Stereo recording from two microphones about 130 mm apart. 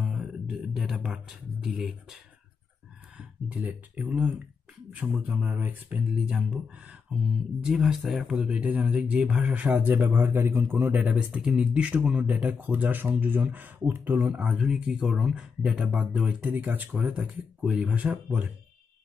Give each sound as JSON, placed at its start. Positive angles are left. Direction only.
{"t": 0.0, "sound": "music", "side_deg": -5}
{"t": 3.2, "sound": "speech", "side_deg": -10}